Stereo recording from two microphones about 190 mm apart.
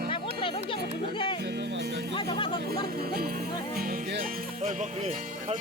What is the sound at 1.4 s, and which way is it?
Music, 60° right (ahead or behind).